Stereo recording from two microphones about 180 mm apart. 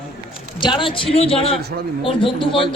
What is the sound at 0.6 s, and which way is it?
A woman's voice, 25° left (ahead or behind).